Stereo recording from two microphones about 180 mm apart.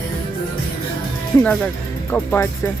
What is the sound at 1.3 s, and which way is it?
Speech, 20° left (ahead or behind).